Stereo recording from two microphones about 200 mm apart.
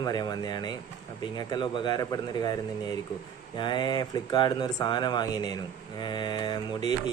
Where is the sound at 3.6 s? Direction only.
20° left (ahead or behind).